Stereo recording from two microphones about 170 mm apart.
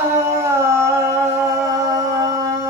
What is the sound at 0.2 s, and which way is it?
Humming, 15° right (ahead or behind).